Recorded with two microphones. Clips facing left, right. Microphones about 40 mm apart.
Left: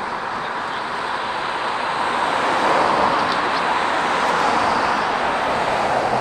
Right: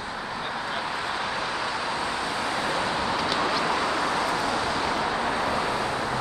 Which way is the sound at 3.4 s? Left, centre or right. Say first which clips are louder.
Left 5 dB; left.